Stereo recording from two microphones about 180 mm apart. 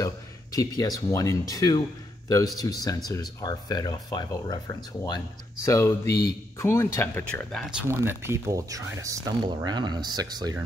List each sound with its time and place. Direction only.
0.0 s speech: 20° left (ahead or behind); by 7.8 s centre (ahead or behind)
7.9 s speech: 15° right (ahead or behind)